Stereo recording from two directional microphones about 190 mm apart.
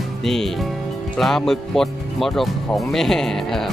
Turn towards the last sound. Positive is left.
turn(degrees=0)  # may be behind; listen again after turning